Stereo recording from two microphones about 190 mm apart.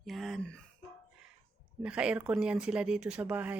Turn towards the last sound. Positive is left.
turn(degrees=-10)  # may be behind; listen again after turning